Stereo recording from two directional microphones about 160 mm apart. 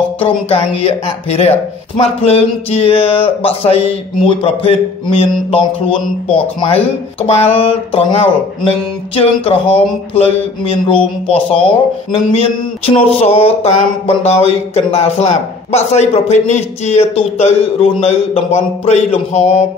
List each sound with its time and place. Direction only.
0.2 s speech: 40° left (ahead or behind)
6.7 s speech: 40° left (ahead or behind)